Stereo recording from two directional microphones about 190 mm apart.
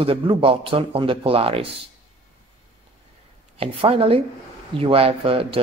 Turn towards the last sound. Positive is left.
turn(degrees=-30)  # may be behind; listen again after turning